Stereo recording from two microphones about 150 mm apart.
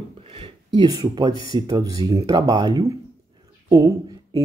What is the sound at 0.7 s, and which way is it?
Speech, 25° right (ahead or behind).